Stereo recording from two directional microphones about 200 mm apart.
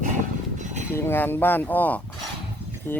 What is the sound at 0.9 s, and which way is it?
Speech, 10° left (ahead or behind).